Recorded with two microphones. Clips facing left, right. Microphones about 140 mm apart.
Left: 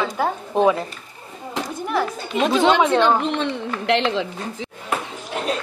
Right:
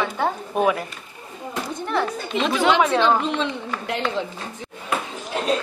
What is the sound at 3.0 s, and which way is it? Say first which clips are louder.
A man's voice: left 1 dB; 60° left (ahead or behind).